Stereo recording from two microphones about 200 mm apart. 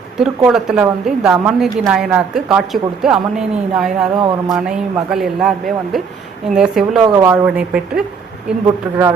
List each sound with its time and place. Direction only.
0.2 s a woman's voice: 5° right (ahead or behind)
7.0 s speech: 15° right (ahead or behind)
7.4 s a woman's voice: 5° right (ahead or behind)